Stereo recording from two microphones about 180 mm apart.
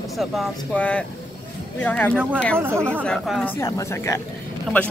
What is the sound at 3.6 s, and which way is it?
Speech, 15° left (ahead or behind).